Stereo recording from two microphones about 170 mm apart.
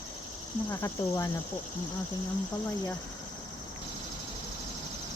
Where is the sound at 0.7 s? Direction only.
15° left (ahead or behind).